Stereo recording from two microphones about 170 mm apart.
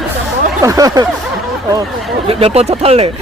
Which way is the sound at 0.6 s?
20° right (ahead or behind).